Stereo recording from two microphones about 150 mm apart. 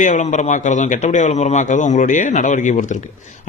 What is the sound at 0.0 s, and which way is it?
A man's voice, 55° left (ahead or behind).